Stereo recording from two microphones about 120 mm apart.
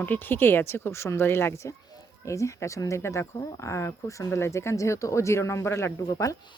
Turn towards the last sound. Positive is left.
turn(degrees=25)  # may be behind; listen again after turning